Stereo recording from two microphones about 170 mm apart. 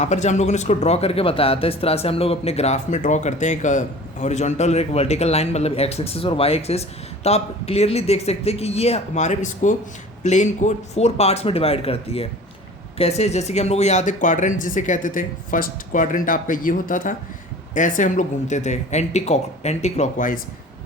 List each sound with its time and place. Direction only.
0.0 s speech: 40° left (ahead or behind)